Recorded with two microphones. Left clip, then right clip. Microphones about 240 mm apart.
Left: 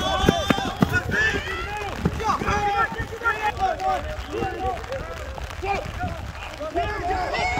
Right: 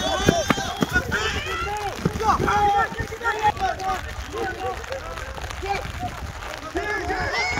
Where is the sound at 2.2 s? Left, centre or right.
Right.